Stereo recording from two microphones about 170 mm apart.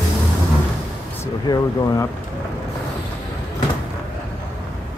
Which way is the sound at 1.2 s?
20° left (ahead or behind).